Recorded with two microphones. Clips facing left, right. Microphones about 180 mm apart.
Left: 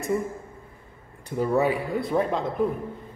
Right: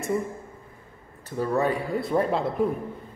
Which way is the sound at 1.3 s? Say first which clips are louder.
Left 2 dB; 15° left (ahead or behind).